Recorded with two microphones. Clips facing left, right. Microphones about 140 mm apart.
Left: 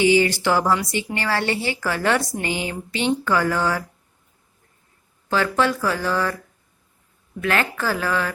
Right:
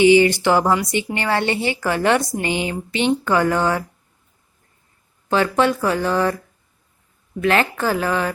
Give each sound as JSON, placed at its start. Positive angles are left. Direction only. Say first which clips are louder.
{"t": 0.0, "sound": "a woman's voice", "louder": "right 5 dB", "side_deg": -20}
{"t": 5.3, "sound": "a woman's voice", "louder": "right 3 dB", "side_deg": -20}
{"t": 7.4, "sound": "a woman's voice", "louder": "right 4 dB", "side_deg": -25}